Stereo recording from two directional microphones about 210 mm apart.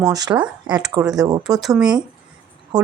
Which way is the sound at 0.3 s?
5° right (ahead or behind).